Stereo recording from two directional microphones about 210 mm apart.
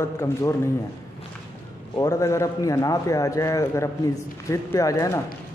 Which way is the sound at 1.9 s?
15° left (ahead or behind).